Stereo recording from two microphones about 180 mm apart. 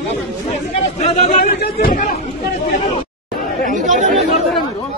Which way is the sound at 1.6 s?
50° left (ahead or behind).